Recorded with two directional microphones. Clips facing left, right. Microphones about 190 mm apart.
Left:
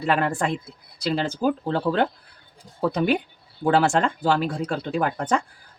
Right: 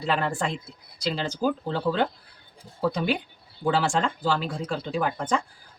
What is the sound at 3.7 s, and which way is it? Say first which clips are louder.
Speech: left 4 dB; 60° left (ahead or behind).